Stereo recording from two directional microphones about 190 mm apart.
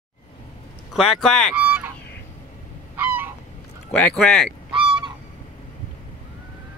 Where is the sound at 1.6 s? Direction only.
10° right (ahead or behind).